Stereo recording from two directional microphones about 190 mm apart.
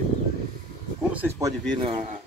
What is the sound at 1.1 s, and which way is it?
Speech, 10° right (ahead or behind).